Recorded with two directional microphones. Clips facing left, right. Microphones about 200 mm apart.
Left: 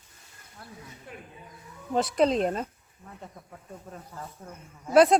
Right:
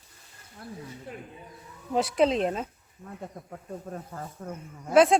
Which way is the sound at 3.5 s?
45° right (ahead or behind).